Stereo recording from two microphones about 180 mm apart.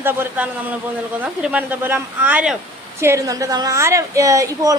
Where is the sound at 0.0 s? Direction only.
10° right (ahead or behind).